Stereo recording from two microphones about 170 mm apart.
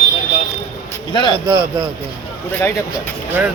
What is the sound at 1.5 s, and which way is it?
Speech, 20° right (ahead or behind).